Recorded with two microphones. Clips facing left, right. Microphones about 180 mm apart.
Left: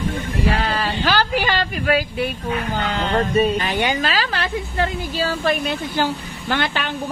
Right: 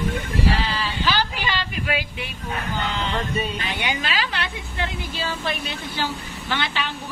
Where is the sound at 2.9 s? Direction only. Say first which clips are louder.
Left 10 dB; 40° left (ahead or behind).